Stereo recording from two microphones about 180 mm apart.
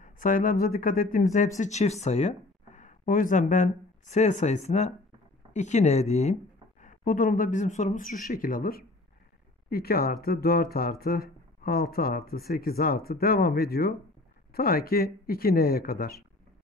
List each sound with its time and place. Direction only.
0.0 s speech: 45° left (ahead or behind)